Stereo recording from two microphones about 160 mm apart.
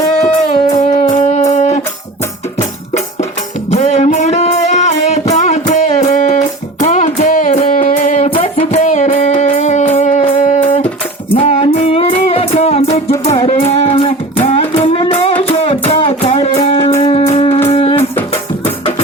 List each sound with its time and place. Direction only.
0.2 s music: 45° left (ahead or behind)
1.1 s a sound: 45° left (ahead or behind)
3.7 s music: 45° left (ahead or behind)
8.4 s music: 35° left (ahead or behind)
8.8 s music: 50° left (ahead or behind)
13.4 s a sound: 40° left (ahead or behind)
17.7 s music: 40° left (ahead or behind)